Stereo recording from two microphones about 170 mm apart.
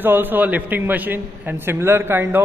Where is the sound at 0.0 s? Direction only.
10° right (ahead or behind).